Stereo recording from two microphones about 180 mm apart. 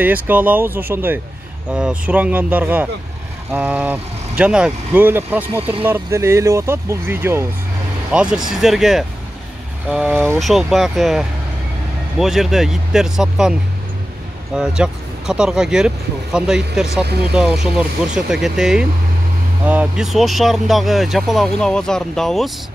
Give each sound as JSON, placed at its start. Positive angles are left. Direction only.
{"t": 0.0, "sound": "speech", "side_deg": -10}
{"t": 17.0, "sound": "speech", "side_deg": -65}
{"t": 17.3, "sound": "speech", "side_deg": -5}